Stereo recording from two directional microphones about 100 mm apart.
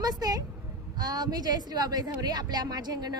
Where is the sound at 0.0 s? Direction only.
40° right (ahead or behind).